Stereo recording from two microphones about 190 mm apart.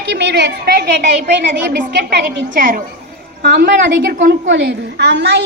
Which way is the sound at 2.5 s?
45° right (ahead or behind).